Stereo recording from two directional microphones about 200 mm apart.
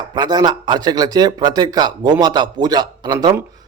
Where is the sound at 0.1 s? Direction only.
20° right (ahead or behind).